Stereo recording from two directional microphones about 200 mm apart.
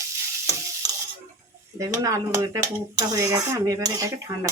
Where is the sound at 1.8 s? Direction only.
15° right (ahead or behind).